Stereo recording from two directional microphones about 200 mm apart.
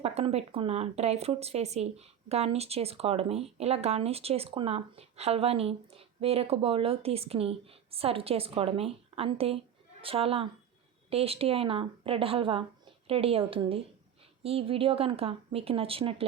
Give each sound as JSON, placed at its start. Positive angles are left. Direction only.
{"t": 0.0, "sound": "speech", "side_deg": -30}